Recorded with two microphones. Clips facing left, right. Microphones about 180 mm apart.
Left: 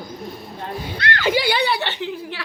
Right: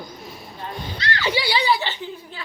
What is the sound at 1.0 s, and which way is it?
Speech, 50° left (ahead or behind).